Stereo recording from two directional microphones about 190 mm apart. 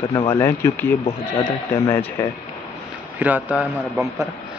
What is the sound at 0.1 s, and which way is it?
Speech, 15° left (ahead or behind).